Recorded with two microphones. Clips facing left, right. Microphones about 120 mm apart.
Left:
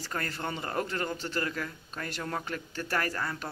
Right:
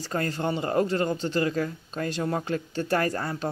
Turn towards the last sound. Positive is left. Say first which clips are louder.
# right 5 dB
turn(degrees=-30)  # may be behind; listen again after turning